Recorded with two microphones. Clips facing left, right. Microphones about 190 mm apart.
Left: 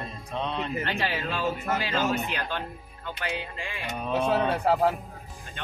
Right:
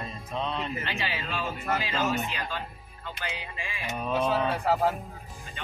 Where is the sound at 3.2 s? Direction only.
65° left (ahead or behind).